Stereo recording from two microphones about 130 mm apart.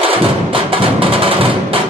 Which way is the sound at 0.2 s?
45° right (ahead or behind).